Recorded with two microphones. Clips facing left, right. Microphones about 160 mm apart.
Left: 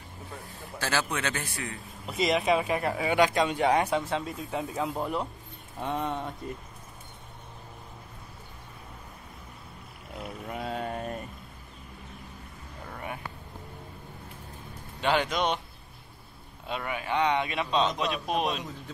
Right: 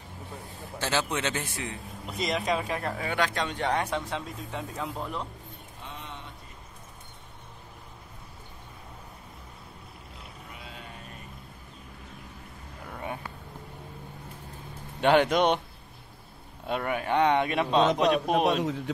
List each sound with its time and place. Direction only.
0.7 s a man's voice: 20° right (ahead or behind)
2.0 s speech: centre (ahead or behind)
5.8 s a sound: 55° left (ahead or behind)
10.5 s a sound: 50° left (ahead or behind)
15.0 s speech: 55° right (ahead or behind)
16.6 s a man's voice: 50° right (ahead or behind)